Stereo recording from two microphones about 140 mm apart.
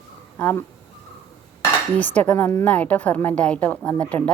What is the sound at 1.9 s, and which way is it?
A woman's voice, 10° left (ahead or behind).